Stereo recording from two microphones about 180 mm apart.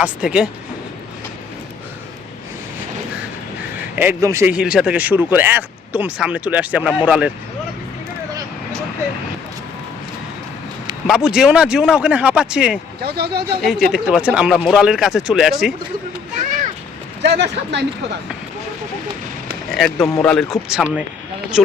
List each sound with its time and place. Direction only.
0.0 s speech: 5° right (ahead or behind)
3.9 s speech: 15° right (ahead or behind)
4.5 s speech: 5° right (ahead or behind)
11.0 s speech: 5° right (ahead or behind)
13.0 s speech: 60° right (ahead or behind)
13.6 s speech: centre (ahead or behind)
17.2 s speech: 70° right (ahead or behind)
19.7 s speech: centre (ahead or behind)